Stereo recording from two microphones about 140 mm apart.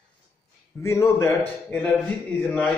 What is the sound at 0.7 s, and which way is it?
A man's voice, 20° left (ahead or behind).